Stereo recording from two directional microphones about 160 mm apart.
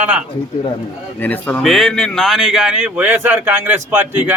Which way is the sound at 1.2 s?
10° left (ahead or behind).